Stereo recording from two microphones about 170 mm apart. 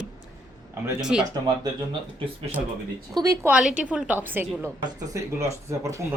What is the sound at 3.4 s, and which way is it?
A woman's voice, 5° right (ahead or behind).